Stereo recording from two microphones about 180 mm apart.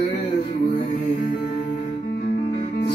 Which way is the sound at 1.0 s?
40° left (ahead or behind).